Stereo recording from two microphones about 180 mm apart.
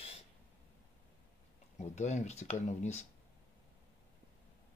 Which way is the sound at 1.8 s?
40° left (ahead or behind).